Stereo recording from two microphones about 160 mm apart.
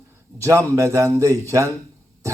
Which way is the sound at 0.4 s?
20° right (ahead or behind).